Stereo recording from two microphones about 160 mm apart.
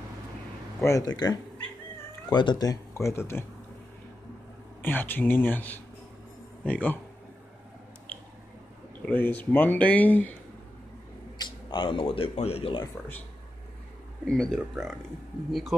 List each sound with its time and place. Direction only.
0.8 s speech: 20° left (ahead or behind)
4.8 s speech: 10° left (ahead or behind)
9.0 s speech: 10° left (ahead or behind)
11.3 s speech: 30° left (ahead or behind)
14.2 s speech: 5° left (ahead or behind)